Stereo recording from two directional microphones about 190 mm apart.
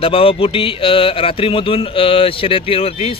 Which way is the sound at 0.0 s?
30° left (ahead or behind).